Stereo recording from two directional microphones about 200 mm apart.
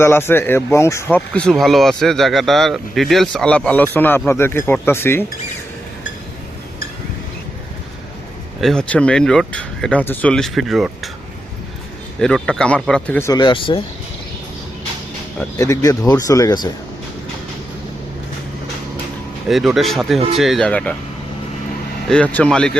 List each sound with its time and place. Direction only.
0.0 s speech: 10° left (ahead or behind)
8.6 s speech: 5° left (ahead or behind)
12.2 s speech: 5° left (ahead or behind); by 13.8 s 25° left (ahead or behind)
15.5 s speech: 15° left (ahead or behind)
19.5 s speech: centre (ahead or behind)
22.1 s speech: 5° left (ahead or behind)